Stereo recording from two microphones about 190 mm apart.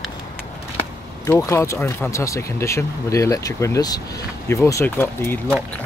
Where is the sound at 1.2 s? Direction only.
15° left (ahead or behind).